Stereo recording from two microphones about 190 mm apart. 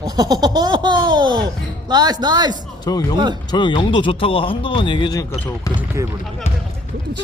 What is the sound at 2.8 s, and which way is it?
Speech, 20° left (ahead or behind).